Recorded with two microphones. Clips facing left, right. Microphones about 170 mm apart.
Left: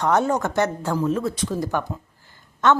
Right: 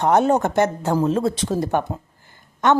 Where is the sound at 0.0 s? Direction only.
20° right (ahead or behind).